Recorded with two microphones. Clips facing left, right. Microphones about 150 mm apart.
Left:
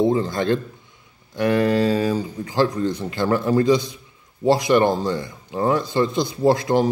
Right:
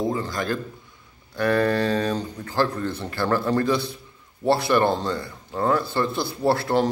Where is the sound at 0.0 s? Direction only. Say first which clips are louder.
Left 6 dB; 25° left (ahead or behind).